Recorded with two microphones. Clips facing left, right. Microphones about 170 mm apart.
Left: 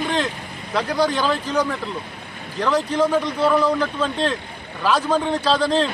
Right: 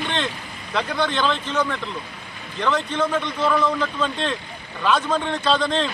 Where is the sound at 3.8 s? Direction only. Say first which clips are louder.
Left 3 dB; 5° left (ahead or behind).